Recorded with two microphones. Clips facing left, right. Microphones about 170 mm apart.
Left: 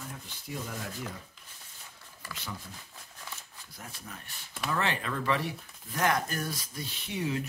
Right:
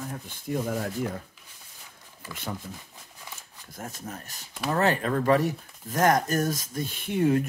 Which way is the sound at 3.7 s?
45° right (ahead or behind).